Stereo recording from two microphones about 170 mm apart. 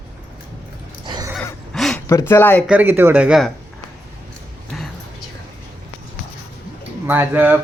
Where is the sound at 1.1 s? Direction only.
25° right (ahead or behind).